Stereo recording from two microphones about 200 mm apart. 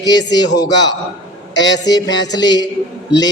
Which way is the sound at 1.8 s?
20° left (ahead or behind).